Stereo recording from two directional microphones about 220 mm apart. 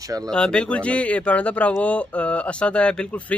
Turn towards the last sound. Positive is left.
turn(degrees=5)  # may be behind; listen again after turning